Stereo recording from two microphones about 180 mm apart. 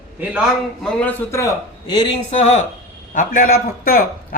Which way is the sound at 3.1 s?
50° left (ahead or behind).